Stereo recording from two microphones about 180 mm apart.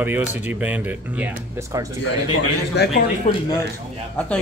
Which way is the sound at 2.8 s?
65° left (ahead or behind).